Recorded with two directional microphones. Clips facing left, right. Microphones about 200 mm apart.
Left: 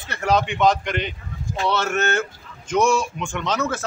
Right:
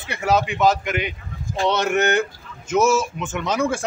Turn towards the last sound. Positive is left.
turn(degrees=-10)  # may be behind; listen again after turning